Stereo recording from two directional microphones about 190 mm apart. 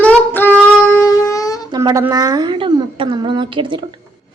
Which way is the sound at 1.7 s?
20° right (ahead or behind).